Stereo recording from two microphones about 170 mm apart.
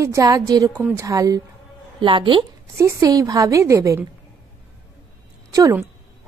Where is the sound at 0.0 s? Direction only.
20° right (ahead or behind).